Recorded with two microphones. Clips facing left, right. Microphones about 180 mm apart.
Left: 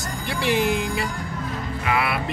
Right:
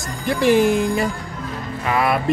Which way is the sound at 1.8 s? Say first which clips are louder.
Right 5 dB; 40° right (ahead or behind).